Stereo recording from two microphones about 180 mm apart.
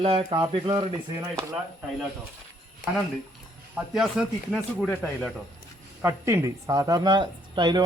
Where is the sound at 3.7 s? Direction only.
5° right (ahead or behind).